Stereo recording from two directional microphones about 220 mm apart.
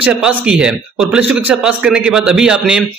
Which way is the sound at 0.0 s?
5° right (ahead or behind).